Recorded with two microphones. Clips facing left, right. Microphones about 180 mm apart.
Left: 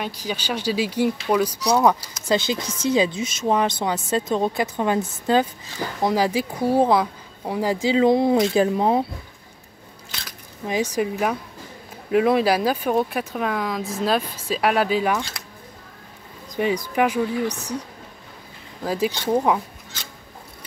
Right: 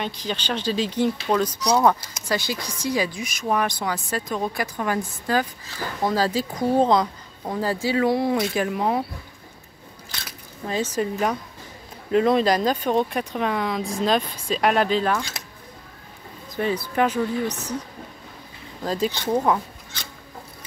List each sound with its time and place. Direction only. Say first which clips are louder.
0.0 s speech: even; 10° left (ahead or behind)
2.2 s speech: left 4 dB; 25° left (ahead or behind)
10.7 s speech: left 2 dB; 15° left (ahead or behind)
16.5 s speech: left 2 dB; 15° left (ahead or behind)
18.9 s speech: left 1 dB; 10° left (ahead or behind)